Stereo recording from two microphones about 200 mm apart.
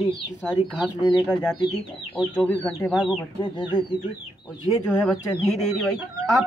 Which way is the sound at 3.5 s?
25° left (ahead or behind).